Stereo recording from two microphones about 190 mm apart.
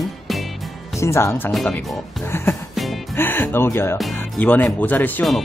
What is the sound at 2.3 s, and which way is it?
Speech, 10° left (ahead or behind).